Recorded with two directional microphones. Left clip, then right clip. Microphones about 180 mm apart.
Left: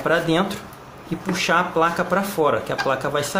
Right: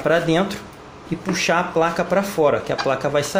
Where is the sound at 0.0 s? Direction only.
20° right (ahead or behind).